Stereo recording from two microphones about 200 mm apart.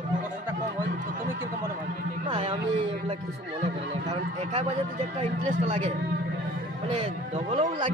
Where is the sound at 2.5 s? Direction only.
25° right (ahead or behind).